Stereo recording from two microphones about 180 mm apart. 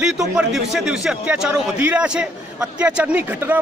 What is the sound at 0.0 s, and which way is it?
A man's voice, 5° right (ahead or behind).